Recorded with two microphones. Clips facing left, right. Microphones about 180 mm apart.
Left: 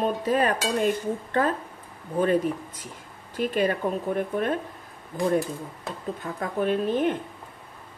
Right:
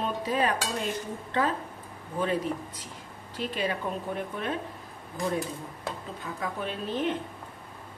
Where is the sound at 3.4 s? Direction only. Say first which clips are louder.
Left 7 dB; 50° left (ahead or behind).